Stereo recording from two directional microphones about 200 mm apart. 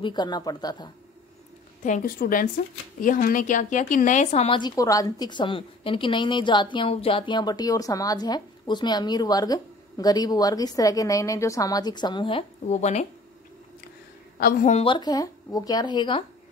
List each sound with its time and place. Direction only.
0.0 s speech: 20° left (ahead or behind)
1.9 s a woman's voice: 40° left (ahead or behind)
14.4 s speech: 40° left (ahead or behind)